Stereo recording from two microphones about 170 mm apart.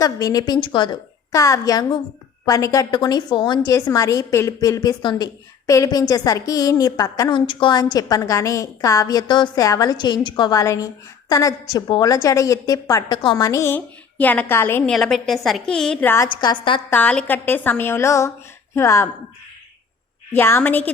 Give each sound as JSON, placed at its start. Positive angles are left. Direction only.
{"t": 0.0, "sound": "a woman's voice", "side_deg": 20}
{"t": 14.8, "sound": "a woman's voice", "side_deg": 5}
{"t": 16.3, "sound": "a woman's voice", "side_deg": 25}
{"t": 16.9, "sound": "a woman's voice", "side_deg": 10}
{"t": 20.3, "sound": "a woman's voice", "side_deg": 15}